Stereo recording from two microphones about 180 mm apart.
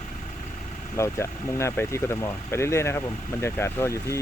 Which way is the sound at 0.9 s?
15° left (ahead or behind).